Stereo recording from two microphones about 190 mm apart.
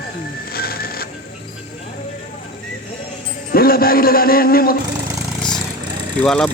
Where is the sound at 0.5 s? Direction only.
55° left (ahead or behind).